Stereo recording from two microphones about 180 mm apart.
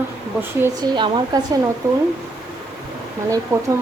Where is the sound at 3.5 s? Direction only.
15° right (ahead or behind).